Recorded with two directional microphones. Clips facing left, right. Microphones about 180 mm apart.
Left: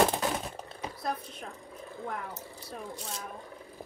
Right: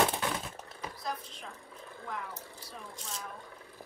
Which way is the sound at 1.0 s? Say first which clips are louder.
Left 5 dB; 55° left (ahead or behind).